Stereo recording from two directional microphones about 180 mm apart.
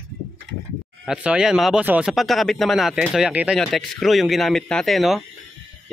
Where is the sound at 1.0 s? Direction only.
5° right (ahead or behind).